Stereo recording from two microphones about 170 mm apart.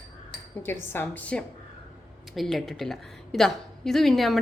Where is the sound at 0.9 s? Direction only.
10° left (ahead or behind).